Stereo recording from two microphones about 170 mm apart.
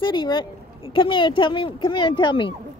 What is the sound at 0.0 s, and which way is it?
Speech, 25° left (ahead or behind).